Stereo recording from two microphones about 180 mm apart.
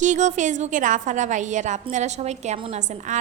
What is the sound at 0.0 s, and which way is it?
A woman's voice, 40° right (ahead or behind).